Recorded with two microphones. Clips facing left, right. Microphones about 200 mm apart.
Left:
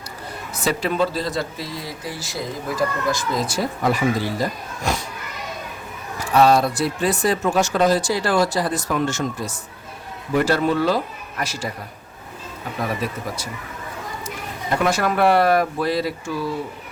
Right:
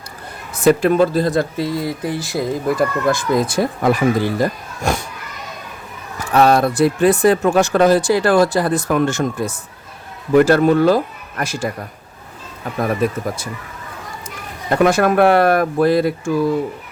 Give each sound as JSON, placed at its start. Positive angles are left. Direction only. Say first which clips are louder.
{"t": 0.5, "sound": "speech", "louder": "right 10 dB", "side_deg": -50}
{"t": 6.3, "sound": "speech", "louder": "right 2 dB", "side_deg": -55}
{"t": 12.9, "sound": "speech", "louder": "right 7 dB", "side_deg": -50}
{"t": 14.8, "sound": "speech", "louder": "right 7 dB", "side_deg": -50}